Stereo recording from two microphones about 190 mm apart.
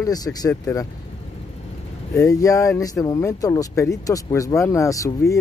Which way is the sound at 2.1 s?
15° left (ahead or behind).